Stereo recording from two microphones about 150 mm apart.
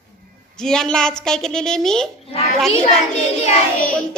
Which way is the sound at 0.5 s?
5° left (ahead or behind).